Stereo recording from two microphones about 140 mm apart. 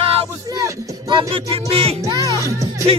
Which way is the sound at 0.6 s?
35° right (ahead or behind).